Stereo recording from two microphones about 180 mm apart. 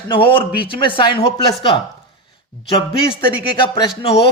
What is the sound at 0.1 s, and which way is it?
Speech, 30° left (ahead or behind).